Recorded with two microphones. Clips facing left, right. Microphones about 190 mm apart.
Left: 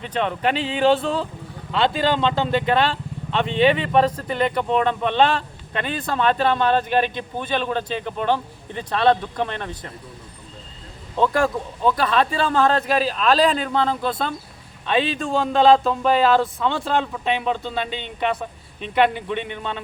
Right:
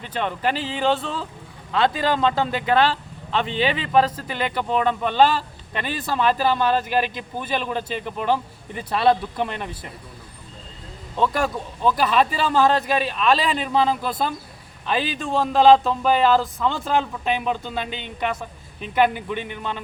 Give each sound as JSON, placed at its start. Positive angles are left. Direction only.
{"t": 0.2, "sound": "a man's voice", "side_deg": -5}
{"t": 11.8, "sound": "a man's voice", "side_deg": 0}